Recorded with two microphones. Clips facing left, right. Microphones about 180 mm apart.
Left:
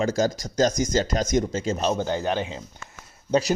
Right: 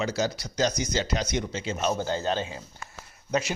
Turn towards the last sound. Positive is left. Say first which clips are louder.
# left 6 dB
turn(degrees=35)  # may be behind; listen again after turning